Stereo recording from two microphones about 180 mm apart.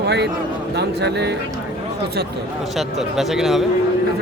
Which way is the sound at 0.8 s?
70° right (ahead or behind).